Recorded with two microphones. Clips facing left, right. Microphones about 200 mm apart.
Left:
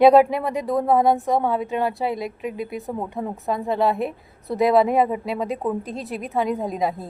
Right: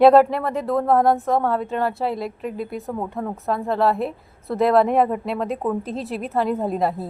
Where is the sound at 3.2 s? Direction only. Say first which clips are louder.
Even; 20° left (ahead or behind).